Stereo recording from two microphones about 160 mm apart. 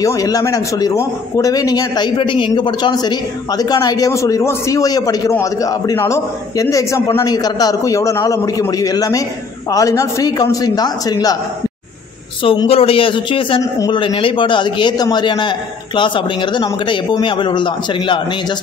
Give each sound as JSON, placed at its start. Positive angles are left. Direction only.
{"t": 0.0, "sound": "a man's voice", "side_deg": 20}
{"t": 12.4, "sound": "a man's voice", "side_deg": 35}